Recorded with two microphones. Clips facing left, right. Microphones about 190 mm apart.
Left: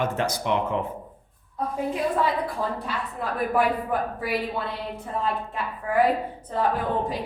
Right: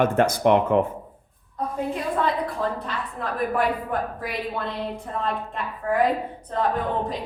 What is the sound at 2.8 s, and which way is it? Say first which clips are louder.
A woman's voice: even; 10° left (ahead or behind).